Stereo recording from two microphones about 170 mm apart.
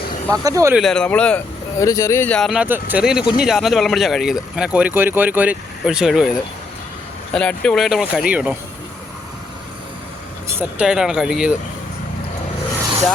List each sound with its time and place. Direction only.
0.4 s speech: 20° right (ahead or behind)
0.7 s speech: centre (ahead or behind)
1.8 s speech: 20° left (ahead or behind); by 6.3 s 5° right (ahead or behind)
7.3 s speech: 5° left (ahead or behind)
10.5 s speech: 10° right (ahead or behind)